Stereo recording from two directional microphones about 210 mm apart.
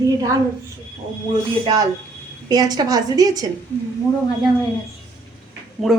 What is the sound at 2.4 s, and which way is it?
A woman's voice, 20° right (ahead or behind).